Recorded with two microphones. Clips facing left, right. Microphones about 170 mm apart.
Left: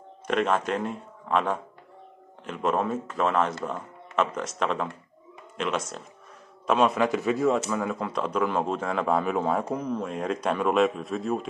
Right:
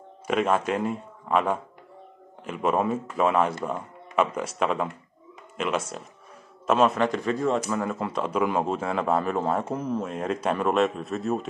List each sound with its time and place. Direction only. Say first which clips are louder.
0.3 s speech: right 1 dB; 5° right (ahead or behind)
6.6 s speech: right 1 dB; centre (ahead or behind)